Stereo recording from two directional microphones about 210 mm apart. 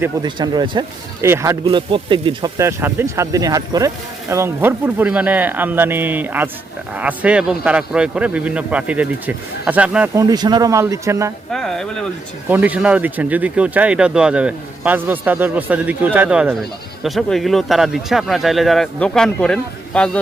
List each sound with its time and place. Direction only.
0.0 s speech: 20° right (ahead or behind)
1.6 s speech: 25° right (ahead or behind)
11.5 s speech: centre (ahead or behind)